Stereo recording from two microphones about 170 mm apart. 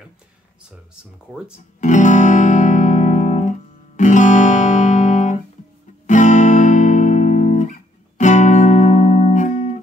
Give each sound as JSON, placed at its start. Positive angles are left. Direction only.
{"t": 1.3, "sound": "speech", "side_deg": -5}
{"t": 1.8, "sound": "guitar", "side_deg": 45}
{"t": 6.0, "sound": "music", "side_deg": 45}